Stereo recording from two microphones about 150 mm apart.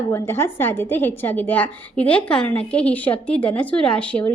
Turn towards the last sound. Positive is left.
turn(degrees=10)  # may be behind; listen again after turning